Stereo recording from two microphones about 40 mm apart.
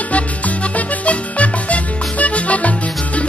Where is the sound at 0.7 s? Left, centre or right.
Left.